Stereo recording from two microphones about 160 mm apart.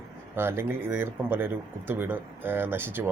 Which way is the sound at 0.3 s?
15° right (ahead or behind).